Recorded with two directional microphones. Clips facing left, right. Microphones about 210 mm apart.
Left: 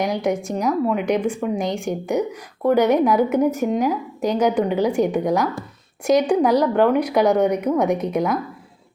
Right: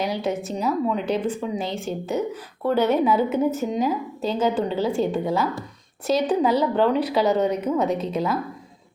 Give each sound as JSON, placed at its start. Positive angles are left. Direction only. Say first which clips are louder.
{"t": 0.0, "sound": "speech", "louder": "left 3 dB", "side_deg": 15}